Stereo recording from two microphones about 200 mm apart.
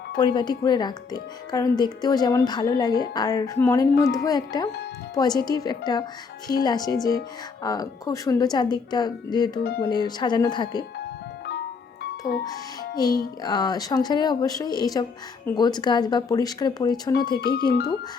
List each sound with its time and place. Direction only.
0.2 s speech: 20° left (ahead or behind)
13.4 s speech: 20° left (ahead or behind)
17.4 s speech: 50° left (ahead or behind)